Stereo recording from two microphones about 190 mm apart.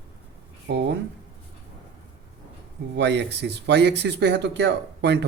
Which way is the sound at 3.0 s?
65° right (ahead or behind).